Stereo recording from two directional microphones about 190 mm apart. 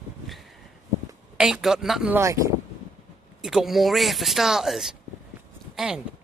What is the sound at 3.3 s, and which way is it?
A man's voice, centre (ahead or behind).